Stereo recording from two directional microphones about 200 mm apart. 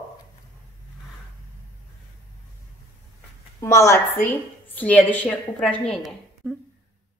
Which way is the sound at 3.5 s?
15° left (ahead or behind).